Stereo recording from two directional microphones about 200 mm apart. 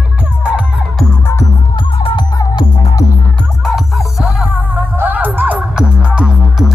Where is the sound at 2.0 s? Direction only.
20° left (ahead or behind).